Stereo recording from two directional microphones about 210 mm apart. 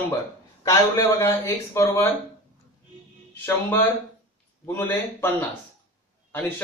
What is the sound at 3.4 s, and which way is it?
A man's voice, 10° left (ahead or behind).